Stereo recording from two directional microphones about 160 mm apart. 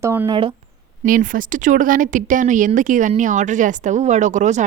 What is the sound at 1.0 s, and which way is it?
A woman's voice, 60° right (ahead or behind).